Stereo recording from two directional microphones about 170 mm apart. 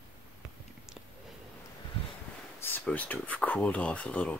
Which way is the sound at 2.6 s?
10° left (ahead or behind).